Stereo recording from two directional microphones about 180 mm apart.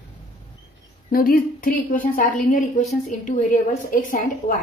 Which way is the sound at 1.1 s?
55° left (ahead or behind).